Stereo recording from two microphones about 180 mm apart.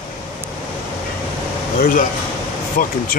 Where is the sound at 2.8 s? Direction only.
50° left (ahead or behind).